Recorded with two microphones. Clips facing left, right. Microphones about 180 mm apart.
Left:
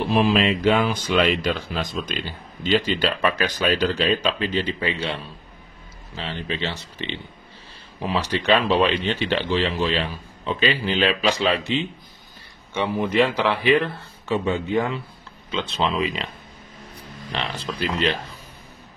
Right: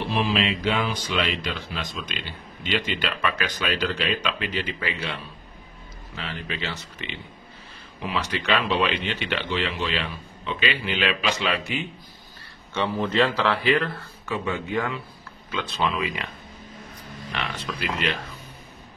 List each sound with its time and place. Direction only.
0.1 s speech: 45° left (ahead or behind); by 16.3 s 25° left (ahead or behind)
17.3 s speech: 30° left (ahead or behind)